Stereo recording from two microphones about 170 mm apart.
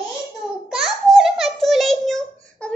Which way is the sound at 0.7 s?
Centre (ahead or behind).